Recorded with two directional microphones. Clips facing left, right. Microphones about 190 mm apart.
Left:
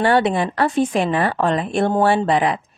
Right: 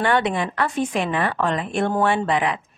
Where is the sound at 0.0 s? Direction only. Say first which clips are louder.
Left 4 dB; 35° left (ahead or behind).